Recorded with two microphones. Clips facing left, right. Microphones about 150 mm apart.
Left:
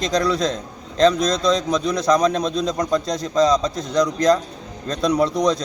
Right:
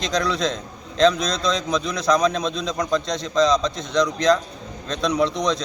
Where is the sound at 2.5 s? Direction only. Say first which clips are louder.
Left 5 dB; 40° left (ahead or behind).